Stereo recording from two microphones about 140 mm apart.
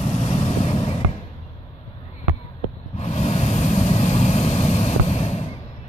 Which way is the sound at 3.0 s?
50° left (ahead or behind).